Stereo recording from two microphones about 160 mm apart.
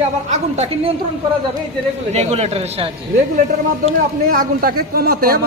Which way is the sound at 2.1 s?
40° right (ahead or behind).